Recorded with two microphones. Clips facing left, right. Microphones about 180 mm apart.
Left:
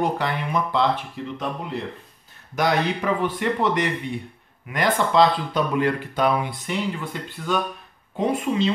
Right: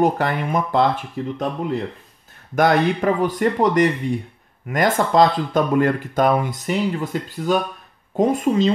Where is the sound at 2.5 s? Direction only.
50° right (ahead or behind).